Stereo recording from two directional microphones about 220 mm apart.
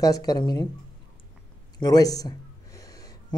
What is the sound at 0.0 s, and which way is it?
Speech, 15° left (ahead or behind).